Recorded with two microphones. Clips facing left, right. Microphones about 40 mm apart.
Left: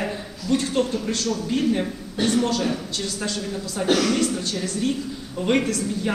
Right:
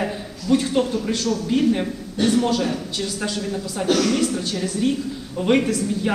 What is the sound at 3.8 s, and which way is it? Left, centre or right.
Speech, centre.